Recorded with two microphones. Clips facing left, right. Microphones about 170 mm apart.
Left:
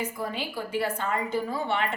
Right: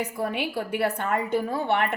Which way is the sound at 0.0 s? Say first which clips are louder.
Right 4 dB; 65° right (ahead or behind).